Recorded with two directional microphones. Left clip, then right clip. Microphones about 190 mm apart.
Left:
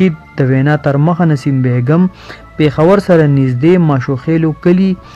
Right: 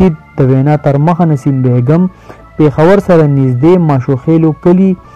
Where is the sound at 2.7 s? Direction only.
15° left (ahead or behind).